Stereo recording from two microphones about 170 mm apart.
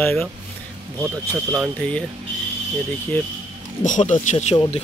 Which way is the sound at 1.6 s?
5° left (ahead or behind).